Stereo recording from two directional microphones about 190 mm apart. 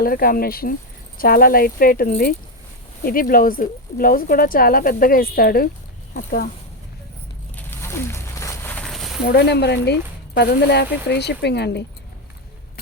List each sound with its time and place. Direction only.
0.0 s speech: 50° left (ahead or behind)
7.5 s a sound: 10° left (ahead or behind)
9.2 s speech: 60° left (ahead or behind)